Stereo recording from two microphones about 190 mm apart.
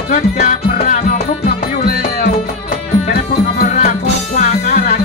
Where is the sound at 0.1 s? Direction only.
40° left (ahead or behind).